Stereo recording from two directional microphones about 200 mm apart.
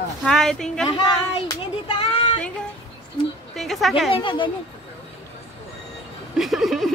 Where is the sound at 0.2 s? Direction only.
Centre (ahead or behind).